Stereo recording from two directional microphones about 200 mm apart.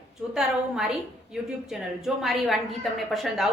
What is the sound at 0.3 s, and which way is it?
A woman's voice, centre (ahead or behind).